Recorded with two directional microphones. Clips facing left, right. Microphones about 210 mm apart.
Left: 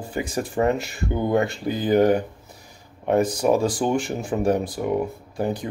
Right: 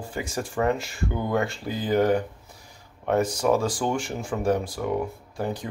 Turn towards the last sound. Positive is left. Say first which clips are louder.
# left 4 dB
turn(degrees=15)  # may be behind; listen again after turning